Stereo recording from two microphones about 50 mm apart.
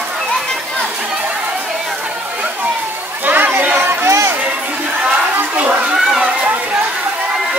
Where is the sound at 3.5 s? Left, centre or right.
Right.